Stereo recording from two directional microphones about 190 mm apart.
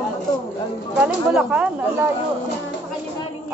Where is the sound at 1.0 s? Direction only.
5° right (ahead or behind).